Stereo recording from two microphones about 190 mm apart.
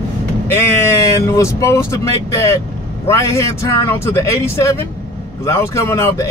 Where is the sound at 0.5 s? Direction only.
15° left (ahead or behind).